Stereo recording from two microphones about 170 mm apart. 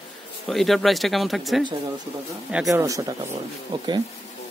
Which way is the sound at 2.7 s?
20° right (ahead or behind).